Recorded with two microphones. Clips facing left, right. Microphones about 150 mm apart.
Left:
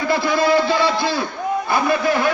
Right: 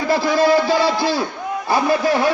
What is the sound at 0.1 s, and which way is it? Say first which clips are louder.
A man's voice: right 2 dB; 35° right (ahead or behind).